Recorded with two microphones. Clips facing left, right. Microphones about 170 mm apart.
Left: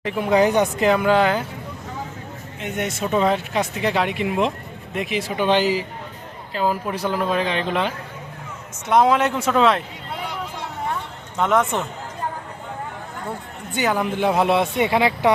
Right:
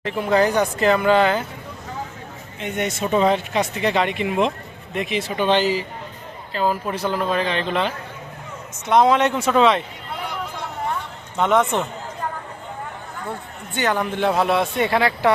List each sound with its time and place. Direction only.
0.0 s speech: 10° left (ahead or behind)
0.9 s speech: 10° left (ahead or behind)
2.6 s speech: 5° left (ahead or behind)
11.3 s speech: centre (ahead or behind)
13.7 s speech: 5° left (ahead or behind)